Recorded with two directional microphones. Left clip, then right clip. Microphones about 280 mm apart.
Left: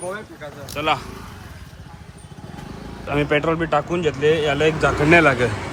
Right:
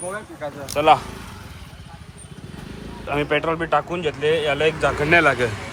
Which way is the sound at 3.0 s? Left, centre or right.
Centre.